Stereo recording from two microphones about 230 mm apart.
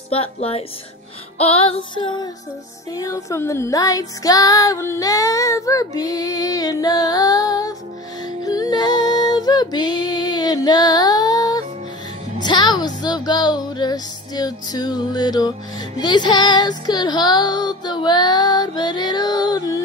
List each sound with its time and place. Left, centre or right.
0.1 s child singing: left
8.3 s music: centre
16.0 s child singing: centre